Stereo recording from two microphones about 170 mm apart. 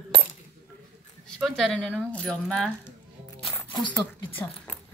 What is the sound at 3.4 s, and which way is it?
Zipper, 25° left (ahead or behind).